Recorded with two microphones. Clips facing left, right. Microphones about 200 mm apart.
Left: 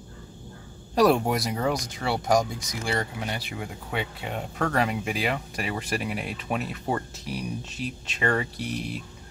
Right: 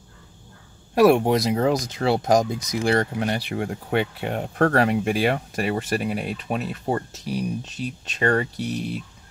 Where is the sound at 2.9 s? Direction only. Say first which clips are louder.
Right 5 dB; 55° right (ahead or behind).